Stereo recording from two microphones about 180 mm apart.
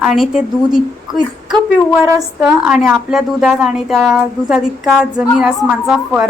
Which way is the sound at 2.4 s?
5° right (ahead or behind).